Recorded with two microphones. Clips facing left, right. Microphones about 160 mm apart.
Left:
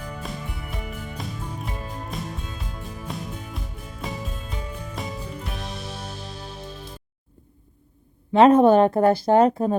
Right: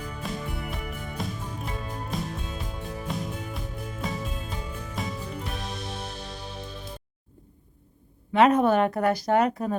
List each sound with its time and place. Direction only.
0.2 s music: centre (ahead or behind)
5.0 s music: centre (ahead or behind)
8.3 s speech: 30° left (ahead or behind)